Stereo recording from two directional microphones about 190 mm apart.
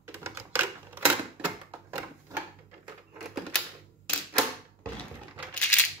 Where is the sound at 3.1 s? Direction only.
Centre (ahead or behind).